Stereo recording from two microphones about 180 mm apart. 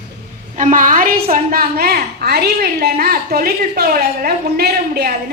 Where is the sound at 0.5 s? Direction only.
45° right (ahead or behind).